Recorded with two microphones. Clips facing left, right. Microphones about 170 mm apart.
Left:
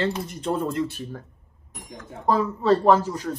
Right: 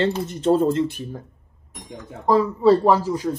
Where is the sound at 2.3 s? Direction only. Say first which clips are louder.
Right 4 dB; 5° right (ahead or behind).